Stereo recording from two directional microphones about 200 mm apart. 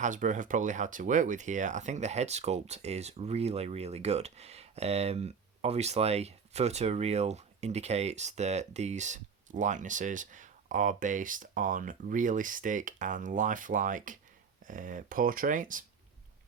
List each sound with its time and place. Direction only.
0.0 s speech: 40° right (ahead or behind)